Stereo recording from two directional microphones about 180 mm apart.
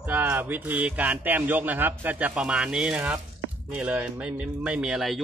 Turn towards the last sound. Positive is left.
turn(degrees=0)  # may be behind; listen again after turning